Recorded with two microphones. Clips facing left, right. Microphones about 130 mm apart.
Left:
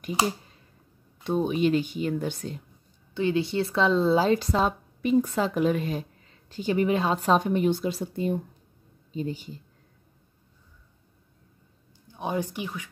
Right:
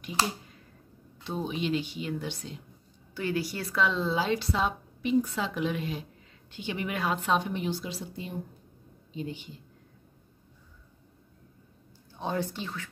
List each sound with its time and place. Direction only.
1.2 s a woman's voice: 55° left (ahead or behind)
3.2 s a woman's voice: 25° left (ahead or behind); by 8.4 s 50° left (ahead or behind)
9.1 s speech: 40° left (ahead or behind)
12.1 s a woman's voice: 15° left (ahead or behind)